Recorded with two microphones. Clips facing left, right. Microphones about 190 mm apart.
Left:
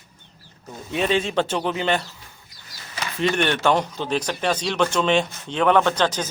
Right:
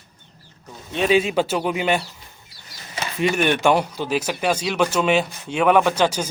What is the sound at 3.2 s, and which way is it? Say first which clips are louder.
A man's voice: right 2 dB; 15° right (ahead or behind).